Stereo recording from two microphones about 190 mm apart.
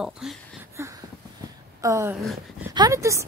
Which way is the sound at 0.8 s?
15° right (ahead or behind).